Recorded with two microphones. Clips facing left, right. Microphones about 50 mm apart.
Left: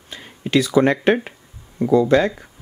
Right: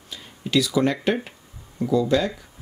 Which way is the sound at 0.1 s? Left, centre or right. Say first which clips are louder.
Left 3 dB; left.